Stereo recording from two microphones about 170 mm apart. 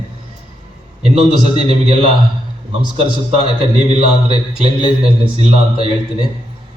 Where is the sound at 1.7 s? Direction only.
35° right (ahead or behind).